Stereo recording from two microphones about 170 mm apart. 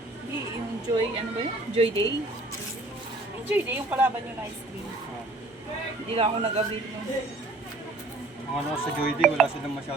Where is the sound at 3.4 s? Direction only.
10° right (ahead or behind).